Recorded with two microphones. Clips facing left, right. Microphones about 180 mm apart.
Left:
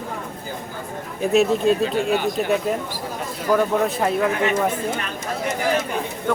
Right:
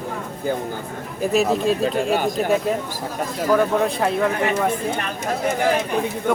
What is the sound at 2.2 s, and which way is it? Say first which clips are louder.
Speech: right 1 dB; 45° right (ahead or behind).